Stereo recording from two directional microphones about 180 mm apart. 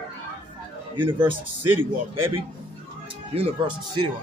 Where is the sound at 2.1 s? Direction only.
30° right (ahead or behind).